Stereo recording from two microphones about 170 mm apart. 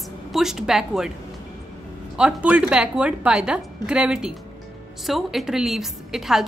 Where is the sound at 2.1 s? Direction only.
5° right (ahead or behind).